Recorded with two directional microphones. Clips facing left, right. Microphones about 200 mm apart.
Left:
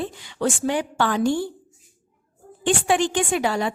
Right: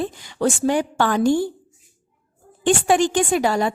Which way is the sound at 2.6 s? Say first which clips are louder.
Right 3 dB; 45° right (ahead or behind).